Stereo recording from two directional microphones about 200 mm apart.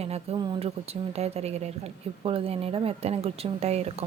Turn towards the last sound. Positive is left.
turn(degrees=-30)  # may be behind; listen again after turning